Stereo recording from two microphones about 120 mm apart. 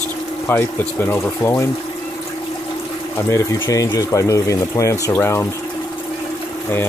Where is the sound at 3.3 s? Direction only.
30° left (ahead or behind).